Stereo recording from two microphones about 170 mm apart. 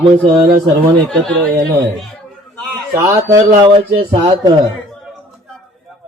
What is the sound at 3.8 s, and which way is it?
Speech, 30° right (ahead or behind).